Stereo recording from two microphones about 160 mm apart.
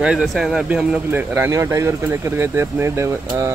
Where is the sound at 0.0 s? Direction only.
5° right (ahead or behind).